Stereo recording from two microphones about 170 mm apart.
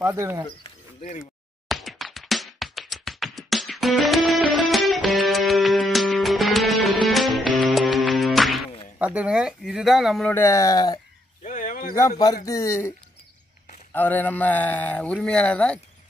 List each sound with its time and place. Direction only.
0.0 s speech: 15° right (ahead or behind)
1.7 s music: centre (ahead or behind)
8.9 s speech: 10° right (ahead or behind)
10.3 s speech: 15° left (ahead or behind)
11.4 s a sound: 50° left (ahead or behind)
12.4 s speech: 15° left (ahead or behind)
13.9 s speech: 10° left (ahead or behind)